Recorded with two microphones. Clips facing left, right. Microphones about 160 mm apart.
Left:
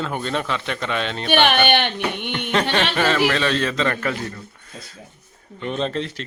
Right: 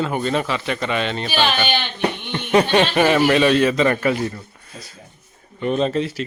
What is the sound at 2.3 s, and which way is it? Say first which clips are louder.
A man's voice: right 6 dB; 15° right (ahead or behind).